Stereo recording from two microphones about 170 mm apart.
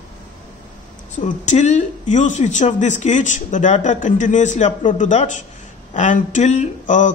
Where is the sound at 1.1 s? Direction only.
45° left (ahead or behind).